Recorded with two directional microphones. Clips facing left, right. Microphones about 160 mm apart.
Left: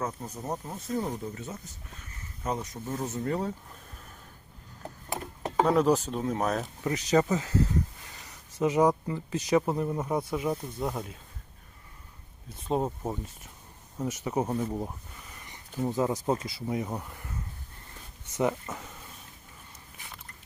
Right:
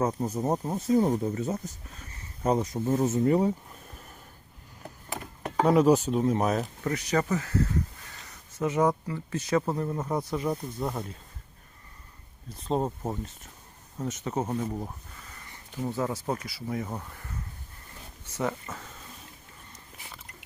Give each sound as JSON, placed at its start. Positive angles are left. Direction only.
{"t": 0.0, "sound": "speech", "side_deg": -35}
{"t": 5.6, "sound": "speech", "side_deg": -10}
{"t": 6.8, "sound": "speech", "side_deg": 20}
{"t": 12.6, "sound": "speech", "side_deg": 5}
{"t": 14.0, "sound": "speech", "side_deg": 10}
{"t": 18.3, "sound": "speech", "side_deg": 20}